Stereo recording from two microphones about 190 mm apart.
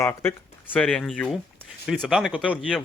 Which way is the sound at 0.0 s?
15° left (ahead or behind).